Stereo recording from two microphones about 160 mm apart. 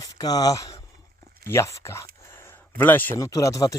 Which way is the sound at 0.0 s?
25° left (ahead or behind).